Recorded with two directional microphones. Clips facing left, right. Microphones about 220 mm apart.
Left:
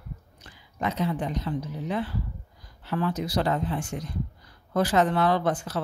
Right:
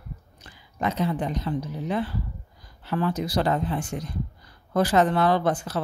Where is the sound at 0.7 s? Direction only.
40° right (ahead or behind).